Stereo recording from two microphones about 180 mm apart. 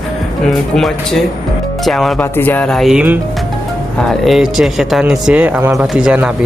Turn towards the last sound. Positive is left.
turn(degrees=-5)  # may be behind; listen again after turning